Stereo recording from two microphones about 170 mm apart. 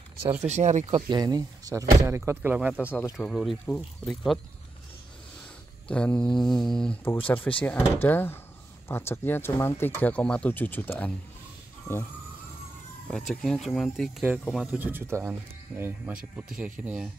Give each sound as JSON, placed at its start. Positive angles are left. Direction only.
{"t": 0.2, "sound": "speech", "side_deg": -15}
{"t": 0.5, "sound": "speech", "side_deg": -45}
{"t": 0.8, "sound": "speech", "side_deg": -30}
{"t": 3.0, "sound": "speech", "side_deg": 5}
{"t": 5.9, "sound": "speech", "side_deg": 5}
{"t": 13.1, "sound": "speech", "side_deg": 5}
{"t": 14.8, "sound": "speech", "side_deg": -10}